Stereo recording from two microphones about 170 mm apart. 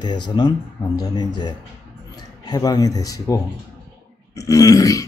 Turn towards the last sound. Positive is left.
turn(degrees=20)  # may be behind; listen again after turning